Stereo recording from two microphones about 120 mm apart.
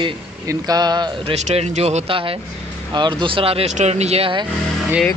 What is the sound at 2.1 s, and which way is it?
Speech, 45° right (ahead or behind).